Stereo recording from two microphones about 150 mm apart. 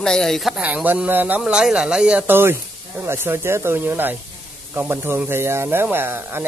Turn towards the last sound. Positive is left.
turn(degrees=-15)  # may be behind; listen again after turning